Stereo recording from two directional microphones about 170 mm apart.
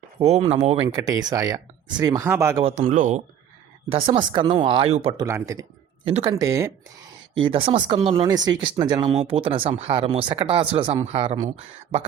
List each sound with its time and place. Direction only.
0.2 s speech: 35° right (ahead or behind)
0.9 s speech: 20° right (ahead or behind)
2.6 s speech: 40° right (ahead or behind)
3.8 s speech: 35° right (ahead or behind)
5.1 s speech: 20° right (ahead or behind)
6.1 s speech: 35° right (ahead or behind)
6.3 s speech: 20° right (ahead or behind)
7.3 s speech: 30° right (ahead or behind)